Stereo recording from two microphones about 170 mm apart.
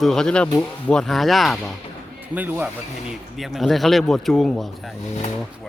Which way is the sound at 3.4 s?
Centre (ahead or behind).